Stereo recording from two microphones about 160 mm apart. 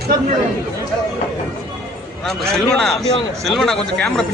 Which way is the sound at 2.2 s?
5° left (ahead or behind).